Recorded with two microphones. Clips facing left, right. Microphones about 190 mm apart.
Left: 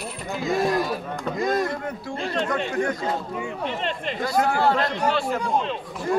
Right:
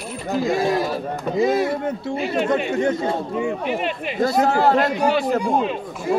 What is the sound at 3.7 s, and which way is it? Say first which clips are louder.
Speech: right 4 dB; 10° right (ahead or behind).